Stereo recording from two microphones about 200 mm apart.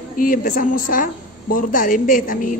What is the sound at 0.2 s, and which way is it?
A woman's voice, 45° left (ahead or behind).